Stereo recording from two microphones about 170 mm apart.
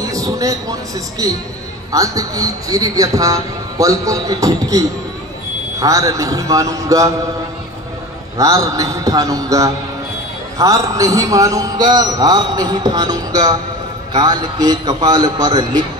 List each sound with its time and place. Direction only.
0.0 s a man's voice: 20° right (ahead or behind)
8.4 s a man's voice: 20° right (ahead or behind)